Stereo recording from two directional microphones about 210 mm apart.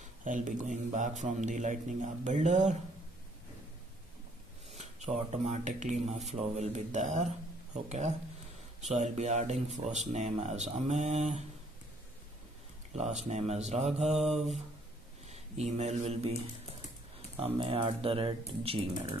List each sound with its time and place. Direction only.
0.2 s a man's voice: 35° right (ahead or behind)
4.7 s a man's voice: 30° right (ahead or behind)
12.9 s a man's voice: 30° right (ahead or behind)
15.3 s speech: 30° right (ahead or behind)
17.4 s speech: 25° right (ahead or behind)